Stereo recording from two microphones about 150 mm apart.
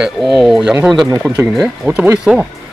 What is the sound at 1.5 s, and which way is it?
Speech, 5° right (ahead or behind).